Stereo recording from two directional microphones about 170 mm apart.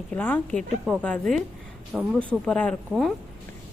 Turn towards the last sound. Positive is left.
turn(degrees=5)  # may be behind; listen again after turning